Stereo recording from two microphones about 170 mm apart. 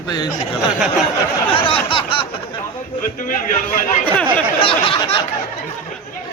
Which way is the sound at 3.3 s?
55° left (ahead or behind).